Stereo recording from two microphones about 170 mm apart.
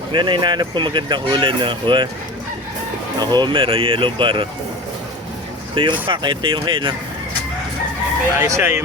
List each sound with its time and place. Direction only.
0.1 s speech: 25° right (ahead or behind)
3.2 s speech: 25° right (ahead or behind)
5.7 s speech: 30° right (ahead or behind)
8.4 s speech: 15° right (ahead or behind)